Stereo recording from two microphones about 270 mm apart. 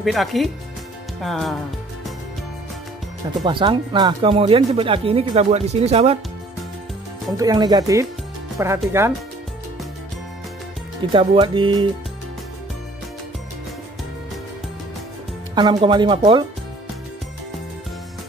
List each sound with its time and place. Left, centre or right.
0.0 s speech: centre
3.4 s speech: centre
7.3 s speech: centre
11.1 s speech: centre
15.5 s speech: centre